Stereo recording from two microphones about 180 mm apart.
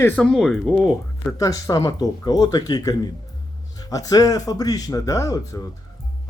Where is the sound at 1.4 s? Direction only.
20° left (ahead or behind).